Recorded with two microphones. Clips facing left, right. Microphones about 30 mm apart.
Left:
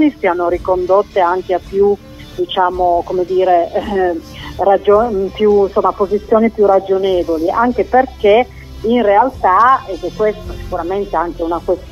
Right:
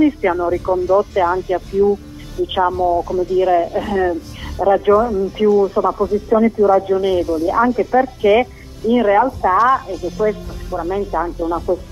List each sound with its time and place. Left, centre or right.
0.0 s speech: centre
3.8 s speech: centre
5.2 s speech: left